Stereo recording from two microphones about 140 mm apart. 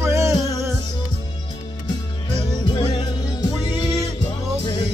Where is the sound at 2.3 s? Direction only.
35° left (ahead or behind).